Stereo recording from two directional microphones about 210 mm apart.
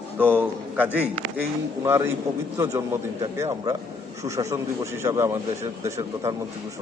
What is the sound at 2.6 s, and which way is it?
A man's voice, 15° right (ahead or behind).